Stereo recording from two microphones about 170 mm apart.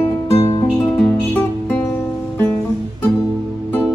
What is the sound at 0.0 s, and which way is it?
Music, 15° left (ahead or behind).